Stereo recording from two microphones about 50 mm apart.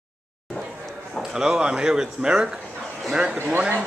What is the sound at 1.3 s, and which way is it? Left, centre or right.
Speech, centre.